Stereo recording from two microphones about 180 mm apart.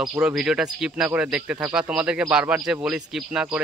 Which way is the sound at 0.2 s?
5° right (ahead or behind).